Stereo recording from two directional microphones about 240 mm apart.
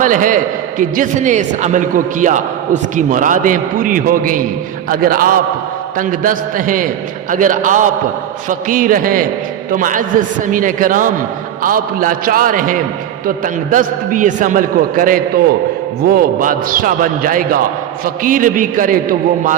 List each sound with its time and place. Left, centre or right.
0.0 s a man's voice: right